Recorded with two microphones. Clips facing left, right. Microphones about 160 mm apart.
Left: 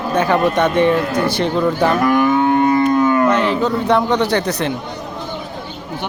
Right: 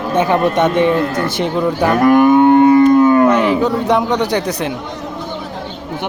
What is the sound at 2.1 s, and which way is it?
Cattle, 50° right (ahead or behind).